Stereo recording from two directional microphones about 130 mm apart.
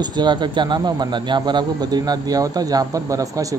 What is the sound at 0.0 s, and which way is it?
Speech, 35° right (ahead or behind).